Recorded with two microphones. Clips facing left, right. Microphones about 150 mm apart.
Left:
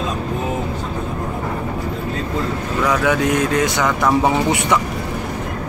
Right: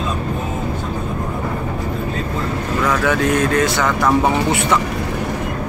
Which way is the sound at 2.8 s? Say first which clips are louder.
Even; 15° left (ahead or behind).